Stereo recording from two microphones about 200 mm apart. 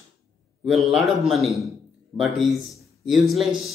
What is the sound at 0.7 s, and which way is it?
A man's voice, centre (ahead or behind).